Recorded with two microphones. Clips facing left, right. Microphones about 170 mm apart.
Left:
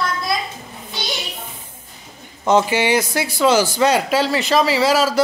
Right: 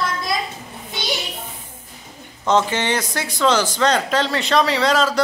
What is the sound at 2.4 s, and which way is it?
A man's voice, 10° left (ahead or behind).